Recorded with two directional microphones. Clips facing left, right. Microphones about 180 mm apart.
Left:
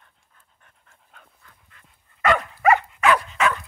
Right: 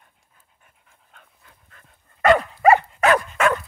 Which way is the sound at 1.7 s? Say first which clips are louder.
Right 3 dB; 40° right (ahead or behind).